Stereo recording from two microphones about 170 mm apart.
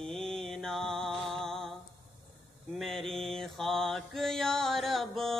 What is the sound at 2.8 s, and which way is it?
Mantra, centre (ahead or behind).